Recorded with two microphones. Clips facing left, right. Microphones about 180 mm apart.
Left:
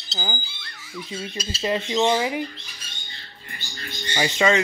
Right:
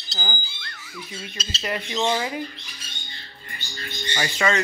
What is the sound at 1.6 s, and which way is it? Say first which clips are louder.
Speech: left 4 dB; 25° left (ahead or behind).